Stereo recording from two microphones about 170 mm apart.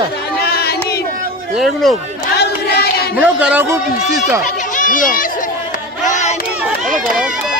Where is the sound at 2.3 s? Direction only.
70° left (ahead or behind).